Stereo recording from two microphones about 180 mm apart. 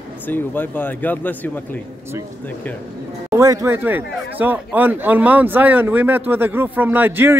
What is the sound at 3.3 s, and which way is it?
Speech, 15° right (ahead or behind).